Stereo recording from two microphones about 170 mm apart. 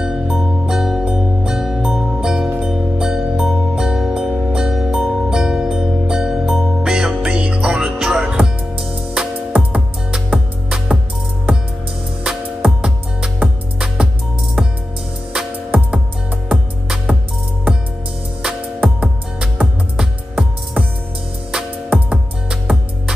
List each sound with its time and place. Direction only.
0.0 s music: centre (ahead or behind)
12.2 s music: 5° right (ahead or behind)
15.3 s music: 5° right (ahead or behind)
18.4 s music: 5° right (ahead or behind)